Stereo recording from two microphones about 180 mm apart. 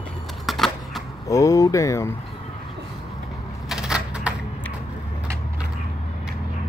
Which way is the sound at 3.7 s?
5° right (ahead or behind).